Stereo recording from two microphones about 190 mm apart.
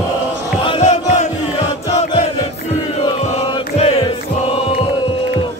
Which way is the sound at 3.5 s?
30° left (ahead or behind).